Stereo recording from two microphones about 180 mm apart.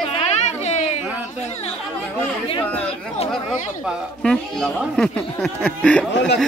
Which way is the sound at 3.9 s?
5° left (ahead or behind).